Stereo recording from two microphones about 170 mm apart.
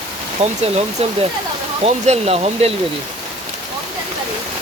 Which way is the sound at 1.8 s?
35° right (ahead or behind).